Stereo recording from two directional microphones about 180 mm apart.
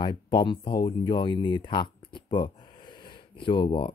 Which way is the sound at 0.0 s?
25° left (ahead or behind).